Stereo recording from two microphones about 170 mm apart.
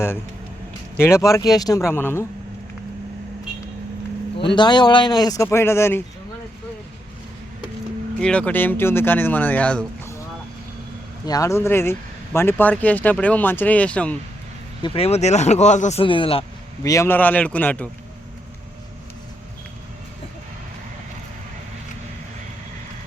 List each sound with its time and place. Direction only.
0.9 s speech: 15° left (ahead or behind)
4.5 s speech: 25° left (ahead or behind)
8.2 s speech: 5° left (ahead or behind)
11.3 s speech: 20° left (ahead or behind)
14.8 s speech: 30° left (ahead or behind)
16.8 s speech: 15° left (ahead or behind)